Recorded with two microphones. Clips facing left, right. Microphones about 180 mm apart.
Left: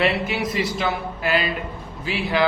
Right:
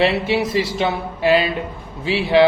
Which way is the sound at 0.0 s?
30° right (ahead or behind).